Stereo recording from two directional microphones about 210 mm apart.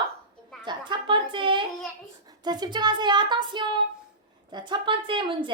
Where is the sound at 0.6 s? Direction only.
20° right (ahead or behind).